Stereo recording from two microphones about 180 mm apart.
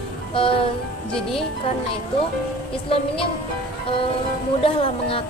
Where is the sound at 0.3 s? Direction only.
30° left (ahead or behind).